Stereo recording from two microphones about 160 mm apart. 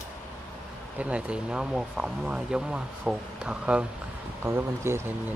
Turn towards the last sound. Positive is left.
turn(degrees=-15)  # may be behind; listen again after turning